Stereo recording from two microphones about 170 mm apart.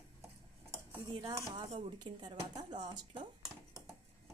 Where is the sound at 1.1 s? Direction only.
25° right (ahead or behind).